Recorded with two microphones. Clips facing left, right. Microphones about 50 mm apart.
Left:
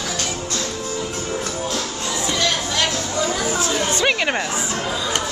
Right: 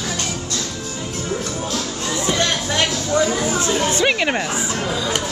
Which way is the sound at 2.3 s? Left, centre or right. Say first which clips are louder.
Even; right.